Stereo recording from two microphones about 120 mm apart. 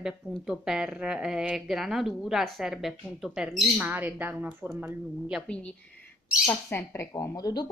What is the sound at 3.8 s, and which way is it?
Speech, 15° right (ahead or behind).